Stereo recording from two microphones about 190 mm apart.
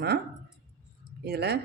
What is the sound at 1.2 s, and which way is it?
Speech, 60° right (ahead or behind).